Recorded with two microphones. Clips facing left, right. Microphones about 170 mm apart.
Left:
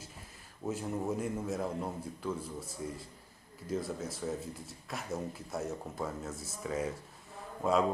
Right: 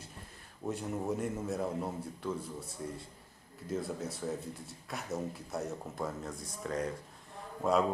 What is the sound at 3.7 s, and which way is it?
A man's voice, centre (ahead or behind).